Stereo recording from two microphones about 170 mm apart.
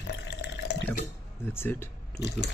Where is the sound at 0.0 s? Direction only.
85° left.